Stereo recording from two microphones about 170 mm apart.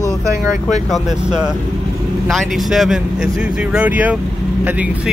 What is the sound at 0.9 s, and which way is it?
Speech, 5° right (ahead or behind).